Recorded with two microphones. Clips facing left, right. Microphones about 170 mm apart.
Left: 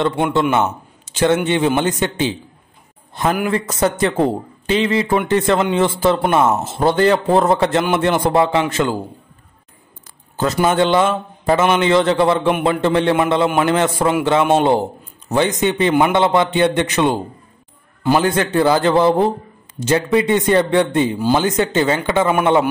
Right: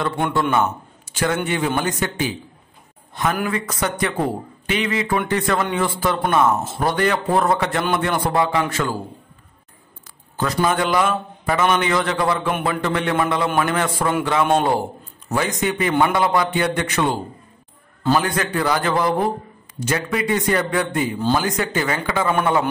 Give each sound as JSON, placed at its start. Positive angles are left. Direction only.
{"t": 0.0, "sound": "a man's voice", "side_deg": 20}
{"t": 3.4, "sound": "a man's voice", "side_deg": 25}
{"t": 10.3, "sound": "a man's voice", "side_deg": 25}